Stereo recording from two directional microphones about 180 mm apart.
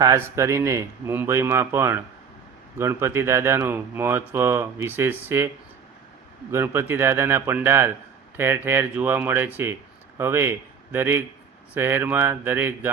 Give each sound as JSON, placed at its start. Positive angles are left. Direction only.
{"t": 0.0, "sound": "speech", "side_deg": -15}
{"t": 6.5, "sound": "speech", "side_deg": -15}